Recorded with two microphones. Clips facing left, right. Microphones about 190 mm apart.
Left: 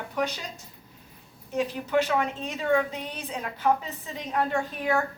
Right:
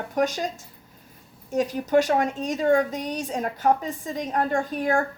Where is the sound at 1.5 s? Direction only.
40° right (ahead or behind).